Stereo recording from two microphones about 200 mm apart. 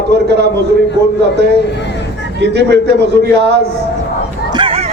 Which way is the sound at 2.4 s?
60° right (ahead or behind).